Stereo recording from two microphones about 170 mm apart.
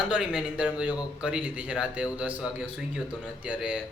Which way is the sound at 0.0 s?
5° right (ahead or behind).